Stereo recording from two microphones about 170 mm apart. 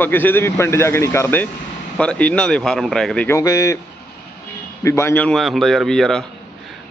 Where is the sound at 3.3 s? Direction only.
20° left (ahead or behind).